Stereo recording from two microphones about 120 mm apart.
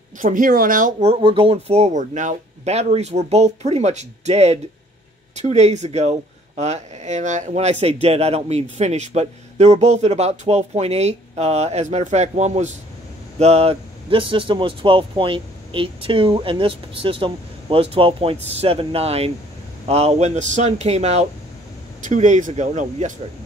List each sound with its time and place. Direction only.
0.2 s speech: 90° right
1.1 s speech: 45° right (ahead or behind); by 12.7 s 70° right (ahead or behind)
13.4 s speech: 60° right (ahead or behind)
22.0 s speech: 85° right